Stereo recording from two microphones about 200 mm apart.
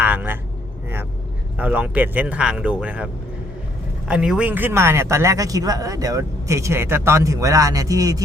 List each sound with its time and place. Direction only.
0.0 s vehicle: 10° right (ahead or behind)
1.5 s speech: 5° right (ahead or behind)
4.1 s speech: 5° right (ahead or behind)